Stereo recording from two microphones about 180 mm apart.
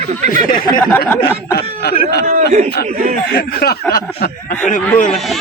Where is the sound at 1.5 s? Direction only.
65° left (ahead or behind).